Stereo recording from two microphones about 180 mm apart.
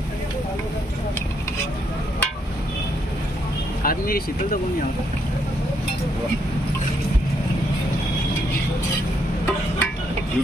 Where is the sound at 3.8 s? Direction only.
55° left (ahead or behind).